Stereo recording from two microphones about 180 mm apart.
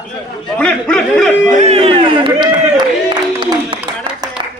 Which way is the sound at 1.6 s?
35° right (ahead or behind).